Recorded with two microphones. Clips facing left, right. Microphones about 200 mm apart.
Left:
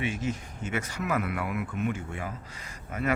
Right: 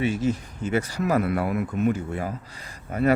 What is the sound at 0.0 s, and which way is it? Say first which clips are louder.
A man's voice: right 7 dB; 35° right (ahead or behind).